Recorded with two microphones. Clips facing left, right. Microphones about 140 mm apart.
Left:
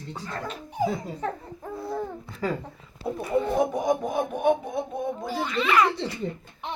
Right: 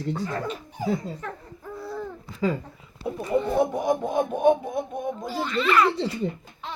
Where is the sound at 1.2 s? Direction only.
25° left (ahead or behind).